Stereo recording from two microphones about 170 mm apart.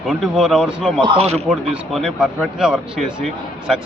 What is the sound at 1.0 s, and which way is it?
Speech, 35° right (ahead or behind).